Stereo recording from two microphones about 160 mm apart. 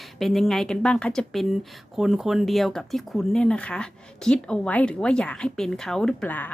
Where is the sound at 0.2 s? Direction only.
Centre (ahead or behind).